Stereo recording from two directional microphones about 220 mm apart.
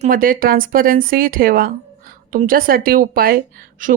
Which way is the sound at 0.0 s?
40° right (ahead or behind).